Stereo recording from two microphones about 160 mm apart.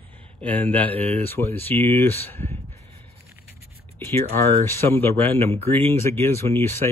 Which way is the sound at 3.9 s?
15° left (ahead or behind).